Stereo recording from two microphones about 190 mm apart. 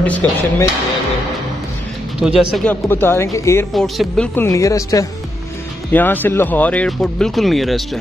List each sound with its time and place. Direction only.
0.0 s speech: 10° left (ahead or behind)
2.2 s speech: centre (ahead or behind); by 3.6 s 15° left (ahead or behind)
3.7 s speech: centre (ahead or behind)
4.4 s speech: 15° left (ahead or behind); by 8.0 s centre (ahead or behind)